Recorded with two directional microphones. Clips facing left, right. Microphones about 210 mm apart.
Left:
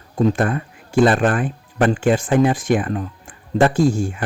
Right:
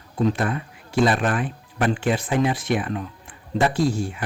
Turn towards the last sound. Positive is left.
turn(degrees=45)  # may be behind; listen again after turning